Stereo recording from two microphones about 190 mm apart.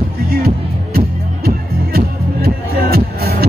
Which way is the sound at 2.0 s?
55° right (ahead or behind).